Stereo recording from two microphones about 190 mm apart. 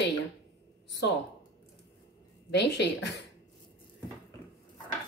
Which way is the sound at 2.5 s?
65° left (ahead or behind).